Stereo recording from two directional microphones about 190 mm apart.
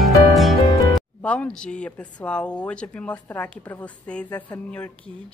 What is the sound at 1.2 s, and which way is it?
Speech, 5° left (ahead or behind).